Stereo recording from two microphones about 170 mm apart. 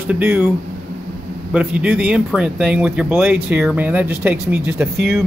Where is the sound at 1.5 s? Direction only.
10° right (ahead or behind).